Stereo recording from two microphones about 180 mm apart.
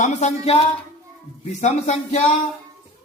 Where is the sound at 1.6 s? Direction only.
40° left (ahead or behind).